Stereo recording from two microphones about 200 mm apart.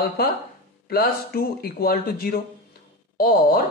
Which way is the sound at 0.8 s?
50° left (ahead or behind).